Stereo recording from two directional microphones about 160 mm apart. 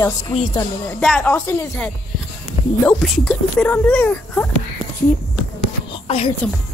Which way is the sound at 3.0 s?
Centre (ahead or behind).